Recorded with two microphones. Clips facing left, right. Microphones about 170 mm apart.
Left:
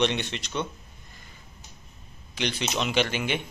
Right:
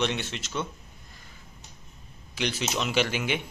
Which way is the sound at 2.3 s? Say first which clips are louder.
Even; 5° right (ahead or behind).